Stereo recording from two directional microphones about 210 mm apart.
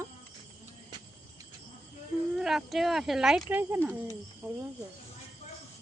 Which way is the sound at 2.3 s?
Centre (ahead or behind).